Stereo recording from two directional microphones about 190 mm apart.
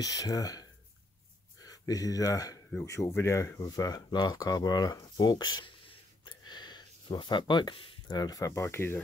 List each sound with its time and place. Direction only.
0.0 s speech: 20° left (ahead or behind)